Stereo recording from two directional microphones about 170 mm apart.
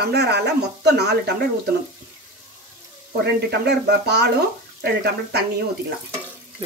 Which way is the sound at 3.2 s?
75° right (ahead or behind).